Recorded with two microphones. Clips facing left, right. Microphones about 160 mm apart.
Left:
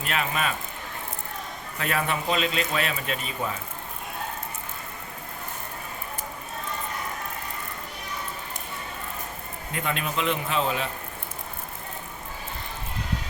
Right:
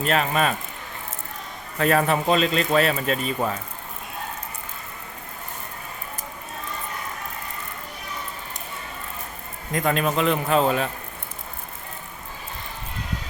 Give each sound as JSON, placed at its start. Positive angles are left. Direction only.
{"t": 0.0, "sound": "speech", "side_deg": -40}
{"t": 1.8, "sound": "speech", "side_deg": -40}
{"t": 9.7, "sound": "a man's voice", "side_deg": -40}